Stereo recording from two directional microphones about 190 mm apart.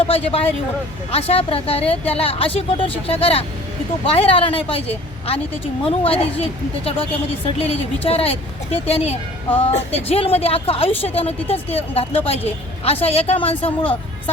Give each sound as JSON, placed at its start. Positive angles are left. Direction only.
{"t": 0.0, "sound": "a woman's voice", "side_deg": 30}
{"t": 8.0, "sound": "a woman's voice", "side_deg": 30}